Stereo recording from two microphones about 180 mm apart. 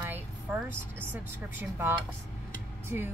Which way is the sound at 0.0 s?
10° right (ahead or behind).